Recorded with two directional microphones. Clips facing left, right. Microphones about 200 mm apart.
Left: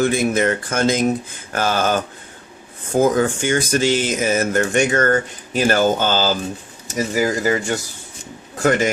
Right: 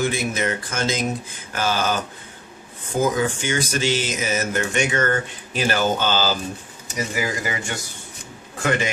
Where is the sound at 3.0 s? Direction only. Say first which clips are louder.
Left 5 dB; 50° left (ahead or behind).